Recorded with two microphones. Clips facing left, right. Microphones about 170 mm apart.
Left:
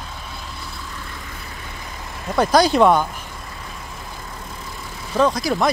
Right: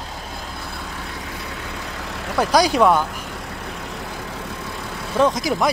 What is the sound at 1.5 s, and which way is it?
Vehicle, 75° right (ahead or behind).